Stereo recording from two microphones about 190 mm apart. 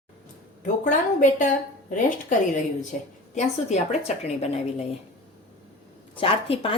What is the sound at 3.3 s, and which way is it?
Speech, 35° left (ahead or behind).